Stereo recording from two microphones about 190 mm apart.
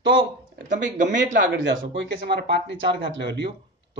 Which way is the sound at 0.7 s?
40° right (ahead or behind).